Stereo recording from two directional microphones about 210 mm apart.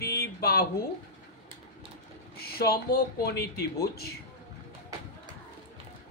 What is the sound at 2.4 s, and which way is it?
A woman's voice, 50° left (ahead or behind).